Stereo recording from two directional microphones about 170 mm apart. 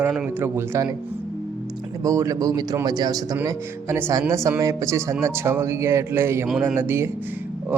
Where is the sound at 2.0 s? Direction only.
20° right (ahead or behind).